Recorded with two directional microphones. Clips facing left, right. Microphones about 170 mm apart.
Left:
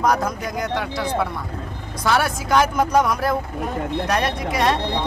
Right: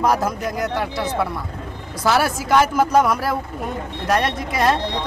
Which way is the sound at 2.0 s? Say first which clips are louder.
Right 2 dB; 5° right (ahead or behind).